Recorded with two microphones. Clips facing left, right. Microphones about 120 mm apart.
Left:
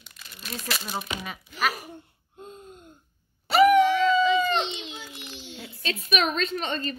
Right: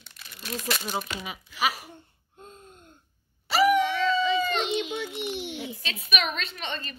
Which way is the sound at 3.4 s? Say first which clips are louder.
Left 4 dB; 45° left (ahead or behind).